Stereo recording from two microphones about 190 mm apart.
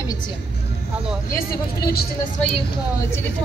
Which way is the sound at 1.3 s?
50° left (ahead or behind).